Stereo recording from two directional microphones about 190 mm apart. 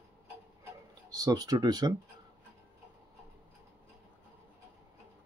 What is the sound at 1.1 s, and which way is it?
Speech, 20° right (ahead or behind).